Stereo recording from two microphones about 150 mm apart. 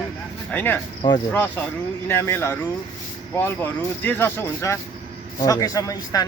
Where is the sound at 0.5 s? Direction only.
10° left (ahead or behind).